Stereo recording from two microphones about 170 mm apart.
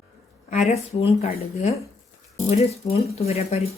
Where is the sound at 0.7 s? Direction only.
35° left (ahead or behind).